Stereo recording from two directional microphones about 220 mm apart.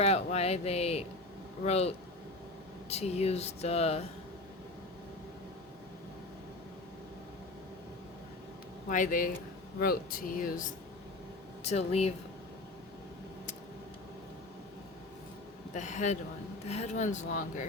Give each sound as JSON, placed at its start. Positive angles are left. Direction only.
{"t": 0.0, "sound": "speech", "side_deg": 30}
{"t": 2.9, "sound": "speech", "side_deg": 30}
{"t": 8.9, "sound": "speech", "side_deg": 35}
{"t": 11.6, "sound": "speech", "side_deg": 30}
{"t": 15.7, "sound": "speech", "side_deg": 35}